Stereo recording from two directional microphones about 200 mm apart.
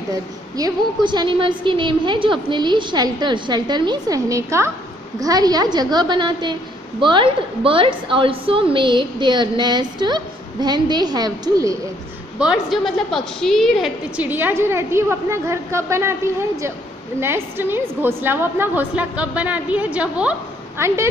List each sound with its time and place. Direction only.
0.1 s a woman's voice: 20° right (ahead or behind)
12.4 s a woman's voice: 5° right (ahead or behind)
17.2 s a woman's voice: 10° right (ahead or behind)